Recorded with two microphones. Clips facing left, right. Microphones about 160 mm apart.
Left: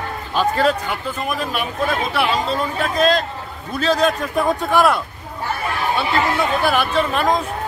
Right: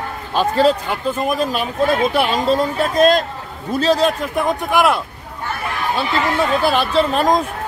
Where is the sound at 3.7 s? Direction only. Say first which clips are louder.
Right 2 dB; 30° right (ahead or behind).